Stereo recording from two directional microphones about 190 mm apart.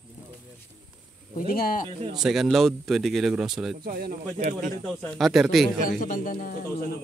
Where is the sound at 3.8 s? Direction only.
50° right (ahead or behind).